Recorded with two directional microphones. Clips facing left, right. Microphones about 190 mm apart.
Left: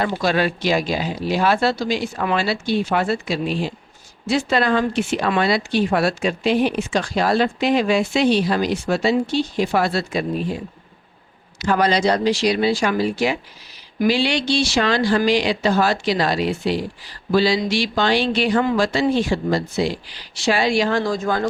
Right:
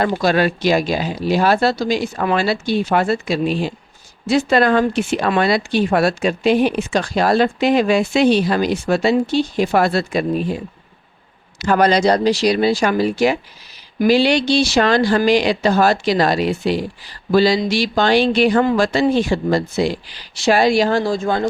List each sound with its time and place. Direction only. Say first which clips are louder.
0.0 s speech: right 3 dB; 45° right (ahead or behind)
11.6 s speech: right 3 dB; 50° right (ahead or behind); by 21.4 s 25° right (ahead or behind)